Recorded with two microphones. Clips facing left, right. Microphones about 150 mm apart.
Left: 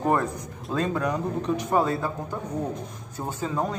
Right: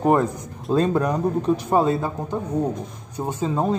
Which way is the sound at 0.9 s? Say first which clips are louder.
Right 5 dB; 35° right (ahead or behind).